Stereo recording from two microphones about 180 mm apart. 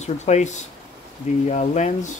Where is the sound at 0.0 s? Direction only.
40° left (ahead or behind).